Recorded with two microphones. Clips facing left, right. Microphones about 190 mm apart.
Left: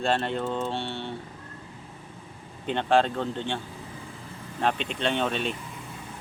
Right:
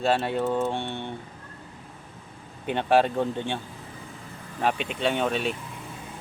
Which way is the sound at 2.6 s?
10° right (ahead or behind).